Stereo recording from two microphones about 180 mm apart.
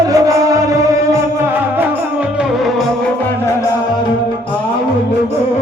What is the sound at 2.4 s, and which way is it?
Music, centre (ahead or behind).